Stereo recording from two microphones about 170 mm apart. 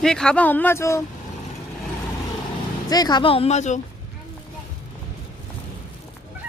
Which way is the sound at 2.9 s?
25° left (ahead or behind).